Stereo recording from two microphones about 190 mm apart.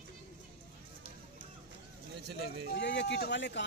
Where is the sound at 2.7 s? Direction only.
65° left (ahead or behind).